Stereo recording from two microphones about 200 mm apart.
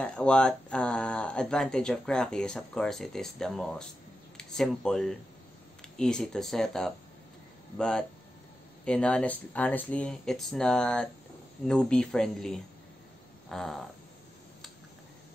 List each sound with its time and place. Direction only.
0.0 s speech: 5° left (ahead or behind)